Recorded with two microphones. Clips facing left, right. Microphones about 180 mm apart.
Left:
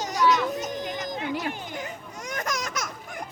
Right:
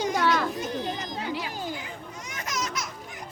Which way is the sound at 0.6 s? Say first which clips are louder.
Even; 45° left (ahead or behind).